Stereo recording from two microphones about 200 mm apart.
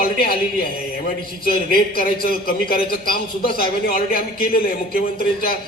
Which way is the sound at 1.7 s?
45° left (ahead or behind).